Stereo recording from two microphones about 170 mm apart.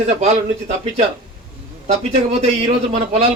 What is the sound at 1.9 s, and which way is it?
A man's voice, 40° right (ahead or behind).